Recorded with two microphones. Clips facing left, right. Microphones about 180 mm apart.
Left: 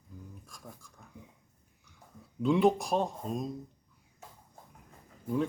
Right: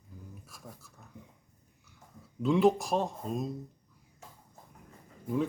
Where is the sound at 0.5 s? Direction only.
5° right (ahead or behind).